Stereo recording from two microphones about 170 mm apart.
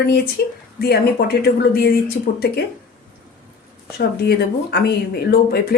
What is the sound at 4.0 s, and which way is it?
Speech, 70° left (ahead or behind).